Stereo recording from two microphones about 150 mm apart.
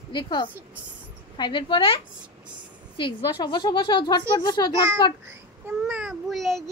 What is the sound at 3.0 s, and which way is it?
A woman's voice, 30° left (ahead or behind).